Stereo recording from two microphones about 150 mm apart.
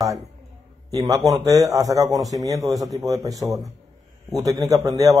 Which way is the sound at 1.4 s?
25° right (ahead or behind).